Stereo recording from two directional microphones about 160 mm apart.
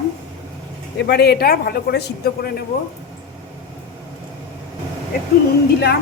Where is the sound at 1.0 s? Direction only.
90° left.